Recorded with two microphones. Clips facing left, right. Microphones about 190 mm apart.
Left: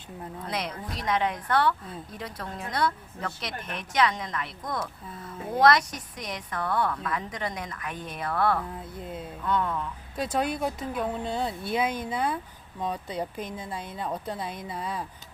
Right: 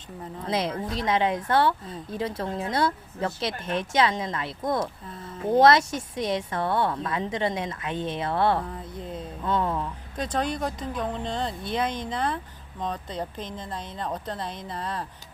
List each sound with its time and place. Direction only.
0.4 s speech: 25° right (ahead or behind)
8.6 s speech: 5° left (ahead or behind)
9.4 s speech: 30° right (ahead or behind)
10.2 s speech: 10° left (ahead or behind)